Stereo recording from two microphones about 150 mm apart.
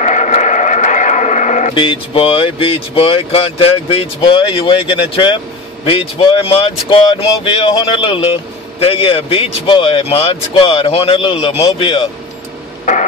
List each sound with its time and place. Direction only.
0.0 s radio: 50° left (ahead or behind)
1.7 s a man's voice: 35° left (ahead or behind)